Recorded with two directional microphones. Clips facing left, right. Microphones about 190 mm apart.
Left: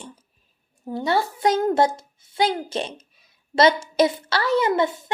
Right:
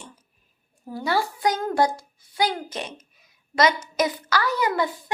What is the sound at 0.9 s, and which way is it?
A woman's voice, 25° left (ahead or behind).